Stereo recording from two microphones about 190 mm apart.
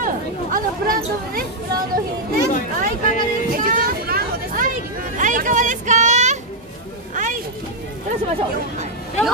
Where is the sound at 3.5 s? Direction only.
45° right (ahead or behind).